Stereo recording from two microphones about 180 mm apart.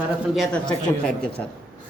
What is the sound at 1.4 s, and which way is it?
Speech, 10° left (ahead or behind).